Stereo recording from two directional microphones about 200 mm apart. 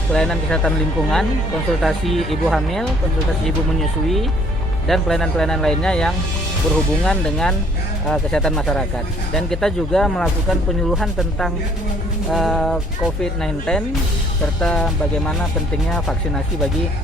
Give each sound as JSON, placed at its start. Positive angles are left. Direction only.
{"t": 0.1, "sound": "speech", "side_deg": 5}
{"t": 1.8, "sound": "speech", "side_deg": 0}